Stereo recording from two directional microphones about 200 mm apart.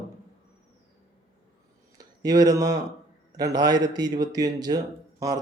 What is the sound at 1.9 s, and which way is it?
A man's voice, 20° right (ahead or behind).